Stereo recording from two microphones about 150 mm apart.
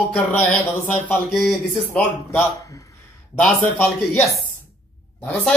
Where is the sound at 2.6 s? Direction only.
20° left (ahead or behind).